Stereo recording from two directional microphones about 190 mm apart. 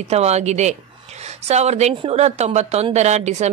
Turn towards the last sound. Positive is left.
turn(degrees=-35)  # may be behind; listen again after turning